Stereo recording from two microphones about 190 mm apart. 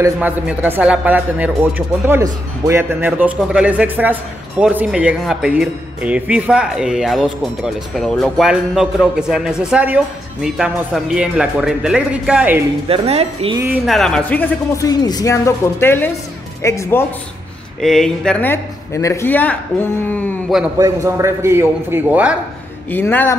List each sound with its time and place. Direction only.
0.0 s a man's voice: 10° right (ahead or behind)
12.8 s a woman's voice: 30° right (ahead or behind)
13.8 s a man's voice: centre (ahead or behind)
14.9 s speech: 20° left (ahead or behind)
17.8 s speech: centre (ahead or behind)
20.7 s a man's voice: 15° right (ahead or behind)
22.8 s speech: 10° left (ahead or behind)